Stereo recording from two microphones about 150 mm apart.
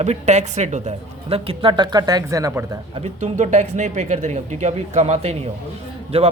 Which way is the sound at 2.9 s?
45° right (ahead or behind).